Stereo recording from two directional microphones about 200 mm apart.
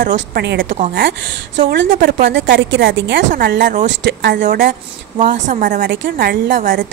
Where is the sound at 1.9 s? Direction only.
50° right (ahead or behind).